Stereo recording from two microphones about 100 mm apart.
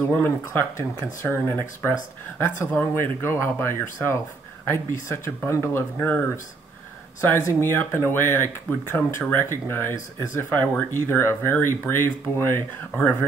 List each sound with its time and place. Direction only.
0.0 s speech: 20° left (ahead or behind)